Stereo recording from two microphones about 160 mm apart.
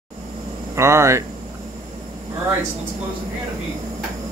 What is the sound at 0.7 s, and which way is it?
Speech, 15° right (ahead or behind).